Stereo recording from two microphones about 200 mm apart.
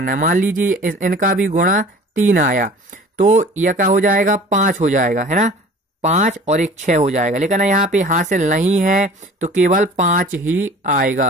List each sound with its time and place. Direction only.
0.0 s speech: 45° right (ahead or behind)
10.4 s speech: 10° right (ahead or behind)
10.8 s speech: 40° right (ahead or behind)